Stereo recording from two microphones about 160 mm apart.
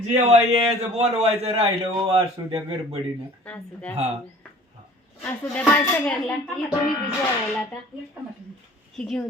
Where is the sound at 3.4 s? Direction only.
10° left (ahead or behind).